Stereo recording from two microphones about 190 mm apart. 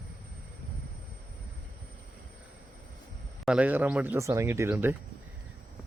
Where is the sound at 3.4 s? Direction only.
5° right (ahead or behind).